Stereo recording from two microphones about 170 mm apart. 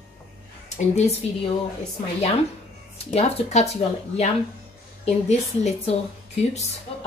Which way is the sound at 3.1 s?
40° left (ahead or behind).